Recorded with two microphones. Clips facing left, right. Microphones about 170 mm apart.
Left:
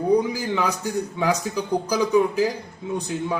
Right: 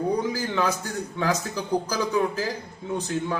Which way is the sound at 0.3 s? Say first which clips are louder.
Left 1 dB; 10° left (ahead or behind).